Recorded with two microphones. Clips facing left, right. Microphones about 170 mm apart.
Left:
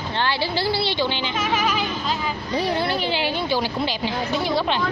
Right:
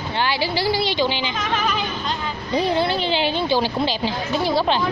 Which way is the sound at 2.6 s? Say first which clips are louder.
Right 3 dB; 25° right (ahead or behind).